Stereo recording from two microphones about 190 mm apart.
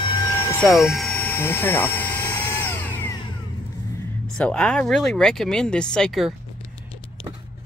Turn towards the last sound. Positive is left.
turn(degrees=0)  # may be behind; listen again after turning